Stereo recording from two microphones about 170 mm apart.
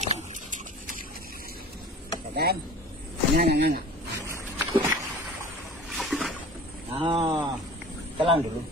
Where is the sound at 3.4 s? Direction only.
70° right (ahead or behind).